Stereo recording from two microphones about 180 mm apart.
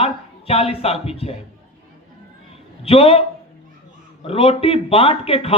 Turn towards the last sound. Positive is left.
turn(degrees=30)  # may be behind; listen again after turning